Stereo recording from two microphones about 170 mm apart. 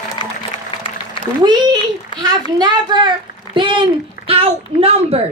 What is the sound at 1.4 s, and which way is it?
A child's voice, 25° right (ahead or behind).